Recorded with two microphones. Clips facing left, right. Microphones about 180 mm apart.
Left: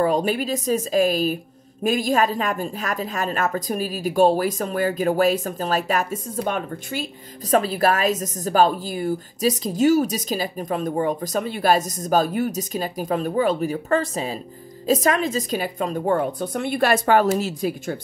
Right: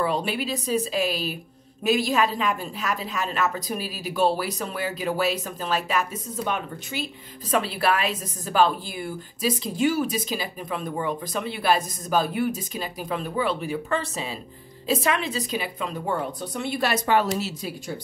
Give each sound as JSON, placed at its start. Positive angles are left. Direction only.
{"t": 0.0, "sound": "a woman's voice", "side_deg": 45}